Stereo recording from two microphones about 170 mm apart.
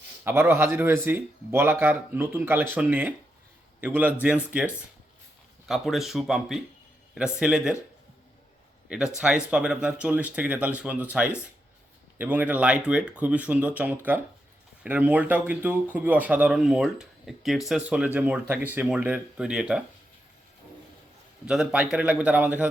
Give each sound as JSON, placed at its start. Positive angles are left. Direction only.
{"t": 0.3, "sound": "speech", "side_deg": -15}
{"t": 9.1, "sound": "speech", "side_deg": -5}
{"t": 21.4, "sound": "speech", "side_deg": -5}